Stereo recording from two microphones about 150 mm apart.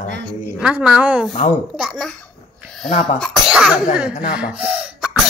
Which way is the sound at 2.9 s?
45° left (ahead or behind).